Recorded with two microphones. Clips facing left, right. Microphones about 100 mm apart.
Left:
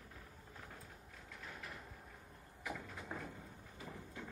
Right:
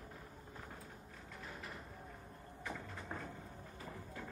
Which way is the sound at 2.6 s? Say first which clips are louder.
Even; 5° left (ahead or behind).